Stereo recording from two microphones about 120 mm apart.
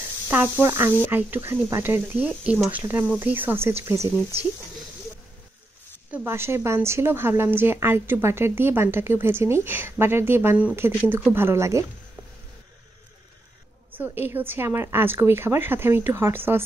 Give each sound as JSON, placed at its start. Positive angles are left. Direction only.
{"t": 0.3, "sound": "a woman's voice", "side_deg": -20}
{"t": 6.1, "sound": "a woman's voice", "side_deg": -20}
{"t": 13.9, "sound": "a woman's voice", "side_deg": -15}